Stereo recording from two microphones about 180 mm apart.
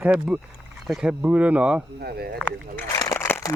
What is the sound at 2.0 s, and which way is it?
Speech, 60° right (ahead or behind).